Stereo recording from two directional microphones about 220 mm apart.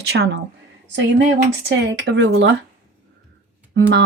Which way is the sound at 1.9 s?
55° right (ahead or behind).